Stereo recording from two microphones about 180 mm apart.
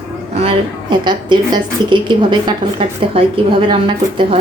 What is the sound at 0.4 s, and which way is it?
A woman's voice, 25° right (ahead or behind).